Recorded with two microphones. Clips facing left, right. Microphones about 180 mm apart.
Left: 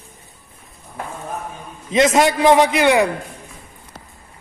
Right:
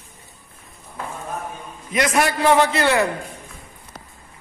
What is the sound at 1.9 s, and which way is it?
A man's voice, 25° left (ahead or behind).